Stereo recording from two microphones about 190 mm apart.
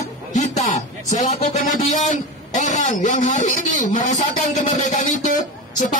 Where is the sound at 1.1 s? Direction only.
40° left (ahead or behind).